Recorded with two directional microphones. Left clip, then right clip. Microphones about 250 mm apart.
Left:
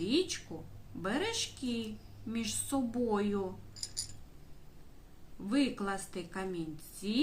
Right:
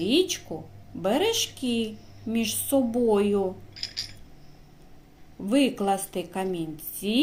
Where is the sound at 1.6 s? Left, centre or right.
Centre.